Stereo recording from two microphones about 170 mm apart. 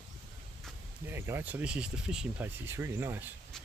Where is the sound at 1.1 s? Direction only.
15° right (ahead or behind).